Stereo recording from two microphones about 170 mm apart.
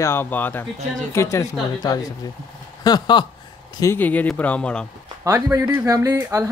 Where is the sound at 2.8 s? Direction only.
25° left (ahead or behind).